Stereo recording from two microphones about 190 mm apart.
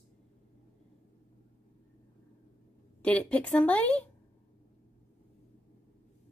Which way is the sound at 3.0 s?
5° left (ahead or behind).